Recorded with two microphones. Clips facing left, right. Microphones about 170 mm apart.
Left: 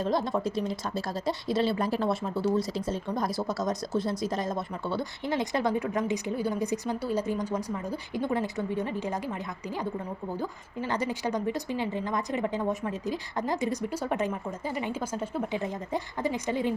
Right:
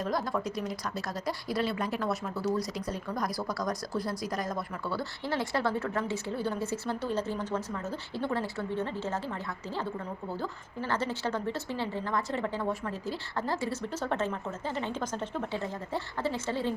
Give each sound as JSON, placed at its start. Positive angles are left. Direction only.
{"t": 0.0, "sound": "a woman's voice", "side_deg": 25}